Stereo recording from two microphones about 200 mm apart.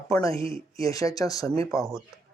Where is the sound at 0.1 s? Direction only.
15° left (ahead or behind).